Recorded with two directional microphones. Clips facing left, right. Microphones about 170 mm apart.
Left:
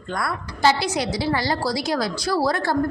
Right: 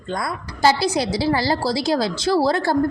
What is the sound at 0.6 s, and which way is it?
A woman's voice, 35° right (ahead or behind).